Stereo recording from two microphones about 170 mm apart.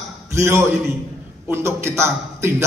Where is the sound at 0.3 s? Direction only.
15° right (ahead or behind).